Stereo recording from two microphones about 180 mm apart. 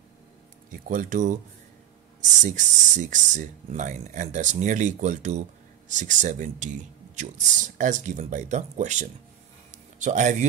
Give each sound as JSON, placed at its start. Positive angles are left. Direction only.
{"t": 0.7, "sound": "speech", "side_deg": -50}
{"t": 2.4, "sound": "speech", "side_deg": -45}
{"t": 9.7, "sound": "a sound", "side_deg": -45}